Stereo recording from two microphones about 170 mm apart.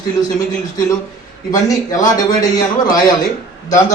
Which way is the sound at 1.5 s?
20° left (ahead or behind).